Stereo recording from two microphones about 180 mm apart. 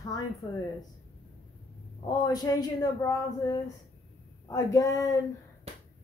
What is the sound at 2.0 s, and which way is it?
Speech, 20° left (ahead or behind).